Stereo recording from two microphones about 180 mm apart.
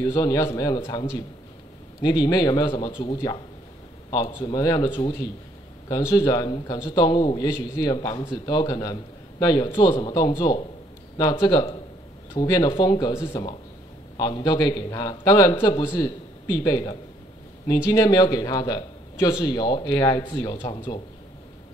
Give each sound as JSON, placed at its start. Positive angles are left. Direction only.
{"t": 0.0, "sound": "a man's voice", "side_deg": 20}